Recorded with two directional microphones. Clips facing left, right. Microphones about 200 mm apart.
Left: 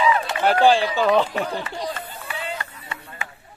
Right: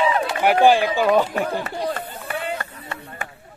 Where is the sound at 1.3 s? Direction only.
45° right (ahead or behind).